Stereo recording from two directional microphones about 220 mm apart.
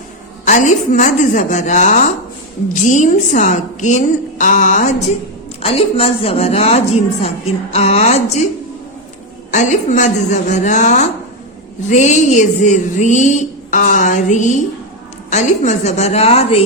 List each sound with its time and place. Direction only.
0.4 s a woman's voice: 35° left (ahead or behind)
9.5 s a woman's voice: 35° left (ahead or behind)